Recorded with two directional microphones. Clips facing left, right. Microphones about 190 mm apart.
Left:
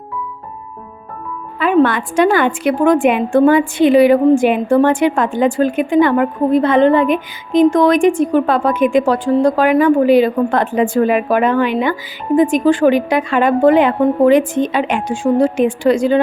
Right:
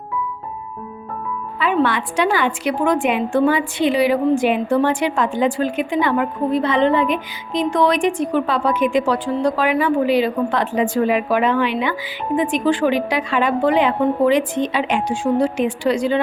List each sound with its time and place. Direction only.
1.5 s a woman's voice: 50° left (ahead or behind)